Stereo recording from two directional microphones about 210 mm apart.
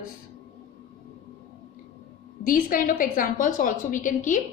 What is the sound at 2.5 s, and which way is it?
A woman's voice, 40° left (ahead or behind).